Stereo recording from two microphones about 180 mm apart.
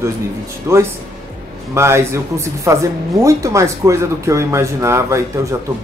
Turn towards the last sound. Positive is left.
turn(degrees=-15)  # may be behind; listen again after turning